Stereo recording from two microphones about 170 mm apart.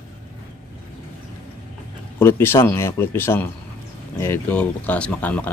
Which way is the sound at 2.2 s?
15° left (ahead or behind).